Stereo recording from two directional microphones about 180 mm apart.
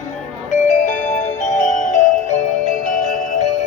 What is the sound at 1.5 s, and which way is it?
Music, 40° left (ahead or behind).